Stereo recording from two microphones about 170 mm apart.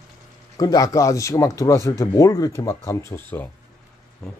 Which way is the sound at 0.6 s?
20° left (ahead or behind).